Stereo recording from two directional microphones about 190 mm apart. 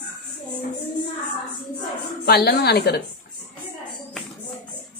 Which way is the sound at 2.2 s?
55° left (ahead or behind).